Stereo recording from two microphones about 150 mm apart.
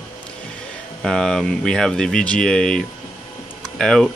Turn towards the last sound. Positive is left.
turn(degrees=5)  # may be behind; listen again after turning